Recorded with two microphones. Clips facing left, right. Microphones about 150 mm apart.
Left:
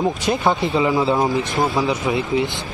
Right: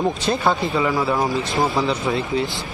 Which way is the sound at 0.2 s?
20° left (ahead or behind).